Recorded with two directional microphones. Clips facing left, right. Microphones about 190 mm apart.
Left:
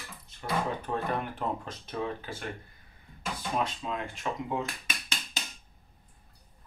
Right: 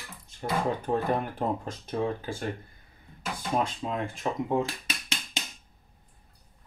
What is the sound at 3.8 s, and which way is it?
Speech, 35° right (ahead or behind).